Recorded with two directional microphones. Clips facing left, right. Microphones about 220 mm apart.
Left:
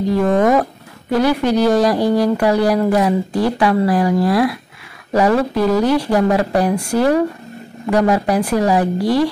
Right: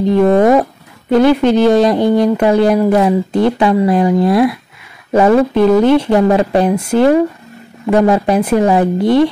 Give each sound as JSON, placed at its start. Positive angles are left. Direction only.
{"t": 0.1, "sound": "speech", "side_deg": -25}